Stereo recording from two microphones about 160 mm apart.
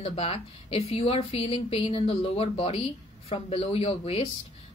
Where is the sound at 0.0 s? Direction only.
35° left (ahead or behind).